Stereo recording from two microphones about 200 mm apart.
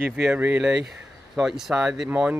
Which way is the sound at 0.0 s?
5° right (ahead or behind).